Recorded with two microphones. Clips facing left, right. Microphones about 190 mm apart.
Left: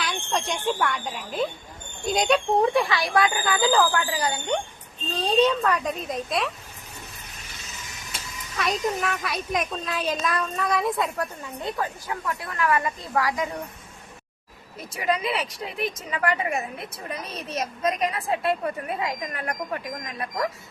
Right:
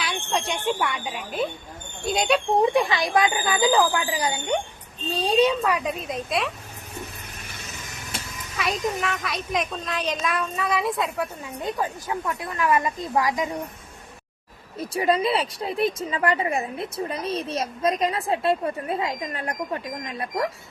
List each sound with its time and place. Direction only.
0.0 s a child's voice: 5° right (ahead or behind)
2.6 s speech: 20° right (ahead or behind); by 6.5 s centre (ahead or behind)
7.3 s vehicle: 55° right (ahead or behind)
8.5 s a child's voice: centre (ahead or behind)
11.6 s a woman's voice: 15° right (ahead or behind)
14.9 s a woman's voice: 30° right (ahead or behind)